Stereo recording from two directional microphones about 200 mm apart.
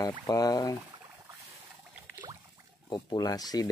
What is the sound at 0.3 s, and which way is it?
Speech, 20° left (ahead or behind).